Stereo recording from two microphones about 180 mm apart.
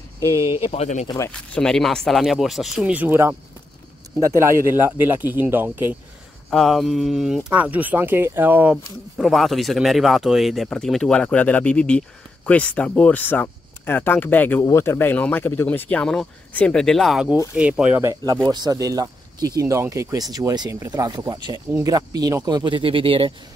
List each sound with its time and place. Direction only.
0.4 s speech: 15° right (ahead or behind)
0.7 s speech: 40° left (ahead or behind)
1.0 s speech: 20° left (ahead or behind)
1.3 s speech: 5° left (ahead or behind); by 5.9 s 10° right (ahead or behind)
6.5 s speech: centre (ahead or behind)
9.2 s speech: centre (ahead or behind); by 23.3 s 30° right (ahead or behind)